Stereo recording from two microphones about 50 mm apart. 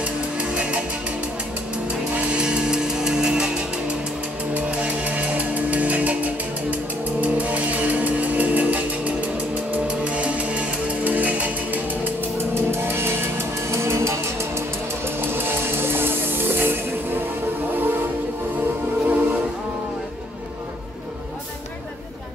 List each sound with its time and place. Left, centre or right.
0.0 s music: right
2.0 s music: right
4.6 s music: right
12.5 s music: right
15.1 s music: right
19.0 s music: right